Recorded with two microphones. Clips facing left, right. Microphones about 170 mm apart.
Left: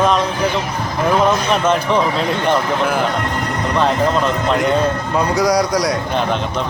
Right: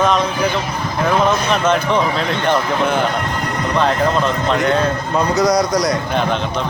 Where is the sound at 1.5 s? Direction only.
Centre (ahead or behind).